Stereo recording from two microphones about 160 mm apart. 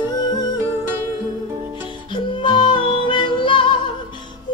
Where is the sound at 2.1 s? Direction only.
30° left (ahead or behind).